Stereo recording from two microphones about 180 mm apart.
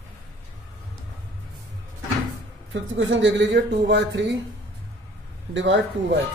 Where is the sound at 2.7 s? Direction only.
90° right.